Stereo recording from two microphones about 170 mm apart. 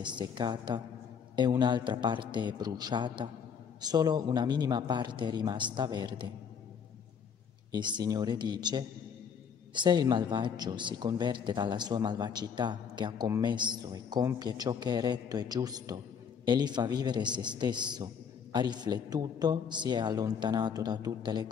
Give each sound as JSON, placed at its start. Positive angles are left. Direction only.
{"t": 0.0, "sound": "a man's voice", "side_deg": -25}
{"t": 7.7, "sound": "a man's voice", "side_deg": -25}